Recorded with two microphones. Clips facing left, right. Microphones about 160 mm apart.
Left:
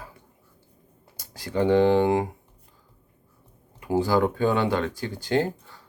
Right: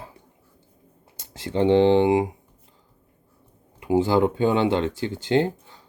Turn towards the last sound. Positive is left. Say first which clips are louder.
# right 3 dB
turn(degrees=-20)  # may be behind; listen again after turning